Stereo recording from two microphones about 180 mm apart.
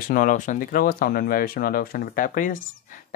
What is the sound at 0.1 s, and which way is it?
Speech, 45° left (ahead or behind).